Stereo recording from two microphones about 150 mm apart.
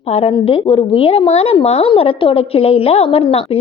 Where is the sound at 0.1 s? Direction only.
40° left (ahead or behind).